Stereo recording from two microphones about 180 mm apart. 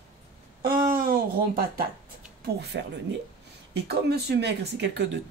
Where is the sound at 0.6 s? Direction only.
55° right (ahead or behind).